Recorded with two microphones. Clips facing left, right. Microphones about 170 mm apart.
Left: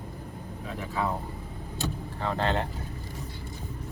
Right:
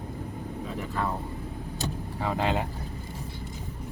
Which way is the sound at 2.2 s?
10° right (ahead or behind).